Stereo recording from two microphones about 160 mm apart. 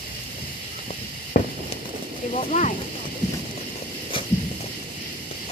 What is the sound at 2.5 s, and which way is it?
Speech, 45° left (ahead or behind).